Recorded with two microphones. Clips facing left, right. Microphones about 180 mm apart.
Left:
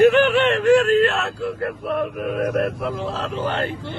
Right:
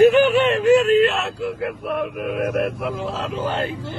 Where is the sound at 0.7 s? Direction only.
Centre (ahead or behind).